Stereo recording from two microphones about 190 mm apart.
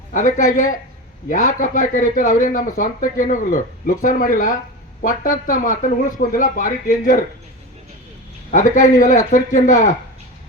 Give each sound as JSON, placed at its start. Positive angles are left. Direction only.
{"t": 0.1, "sound": "speech", "side_deg": 40}
{"t": 8.4, "sound": "speech", "side_deg": 45}